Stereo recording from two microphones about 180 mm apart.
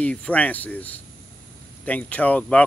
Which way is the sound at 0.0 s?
5° left (ahead or behind).